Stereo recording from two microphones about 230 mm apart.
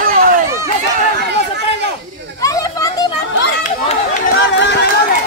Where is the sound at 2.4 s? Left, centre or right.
Centre.